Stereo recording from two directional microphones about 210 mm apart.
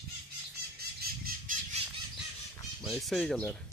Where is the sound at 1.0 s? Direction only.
45° right (ahead or behind).